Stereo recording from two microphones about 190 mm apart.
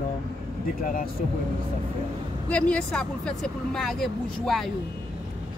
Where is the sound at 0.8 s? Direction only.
45° left (ahead or behind).